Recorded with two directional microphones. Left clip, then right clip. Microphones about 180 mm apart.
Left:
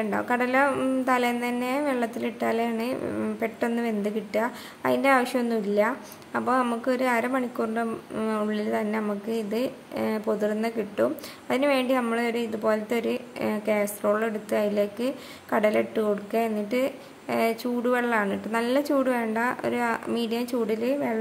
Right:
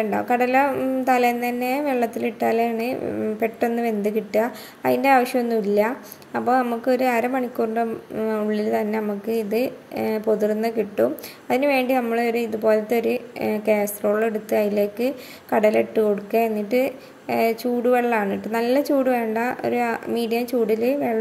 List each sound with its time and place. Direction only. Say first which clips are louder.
0.1 s a woman's voice: right 4 dB; 20° right (ahead or behind)